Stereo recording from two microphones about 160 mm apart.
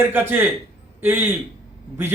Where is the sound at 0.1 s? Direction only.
10° right (ahead or behind).